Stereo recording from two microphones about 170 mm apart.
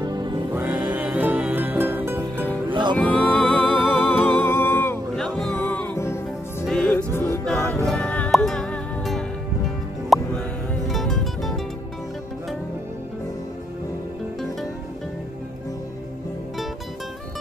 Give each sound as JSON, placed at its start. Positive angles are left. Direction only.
{"t": 0.5, "sound": "music", "side_deg": -10}
{"t": 2.7, "sound": "music", "side_deg": -25}
{"t": 3.0, "sound": "music", "side_deg": 5}
{"t": 5.1, "sound": "music", "side_deg": 5}
{"t": 7.2, "sound": "music", "side_deg": 15}